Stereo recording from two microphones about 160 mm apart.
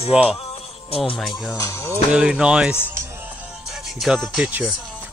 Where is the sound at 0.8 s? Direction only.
35° left (ahead or behind).